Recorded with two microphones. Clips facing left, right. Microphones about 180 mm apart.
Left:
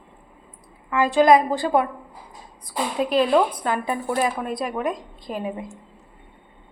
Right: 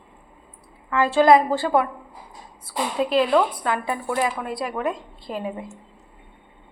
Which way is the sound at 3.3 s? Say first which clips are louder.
Left 1 dB; 20° left (ahead or behind).